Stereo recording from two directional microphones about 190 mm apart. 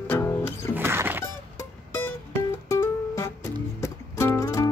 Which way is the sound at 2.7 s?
15° left (ahead or behind).